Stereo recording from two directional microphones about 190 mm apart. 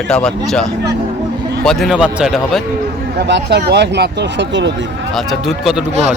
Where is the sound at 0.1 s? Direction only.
5° left (ahead or behind).